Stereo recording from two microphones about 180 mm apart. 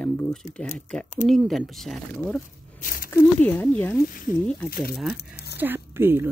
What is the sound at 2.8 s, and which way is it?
Speech, 50° left (ahead or behind).